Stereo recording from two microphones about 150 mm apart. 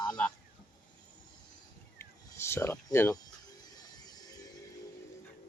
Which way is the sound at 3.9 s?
25° left (ahead or behind).